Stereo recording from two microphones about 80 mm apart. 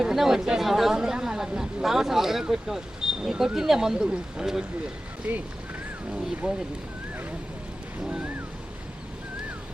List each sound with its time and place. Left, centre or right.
0.0 s speech: centre
8.0 s speech: centre